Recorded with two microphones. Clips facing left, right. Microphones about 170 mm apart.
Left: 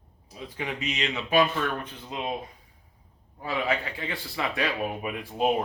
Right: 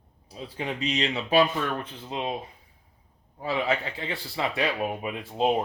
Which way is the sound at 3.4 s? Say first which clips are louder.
Right 1 dB; 25° right (ahead or behind).